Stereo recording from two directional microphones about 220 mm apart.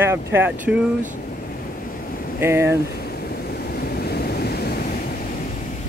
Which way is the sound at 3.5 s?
45° left (ahead or behind).